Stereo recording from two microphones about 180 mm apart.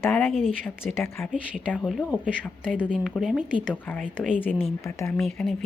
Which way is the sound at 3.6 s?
5° left (ahead or behind).